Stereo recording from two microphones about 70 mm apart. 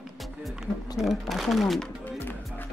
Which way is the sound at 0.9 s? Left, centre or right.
Centre.